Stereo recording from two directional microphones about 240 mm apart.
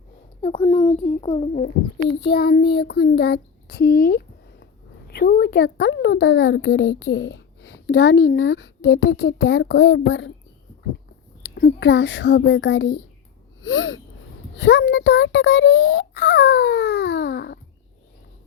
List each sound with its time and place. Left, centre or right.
0.4 s a child's voice: left
2.2 s a child's voice: left
11.5 s speech: left
13.6 s a sound: left
14.6 s speech: left